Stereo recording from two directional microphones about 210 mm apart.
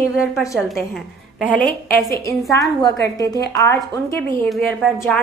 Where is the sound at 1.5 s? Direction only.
5° left (ahead or behind).